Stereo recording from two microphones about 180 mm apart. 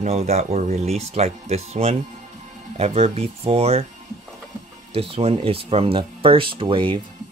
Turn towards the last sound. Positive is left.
turn(degrees=-30)  # may be behind; listen again after turning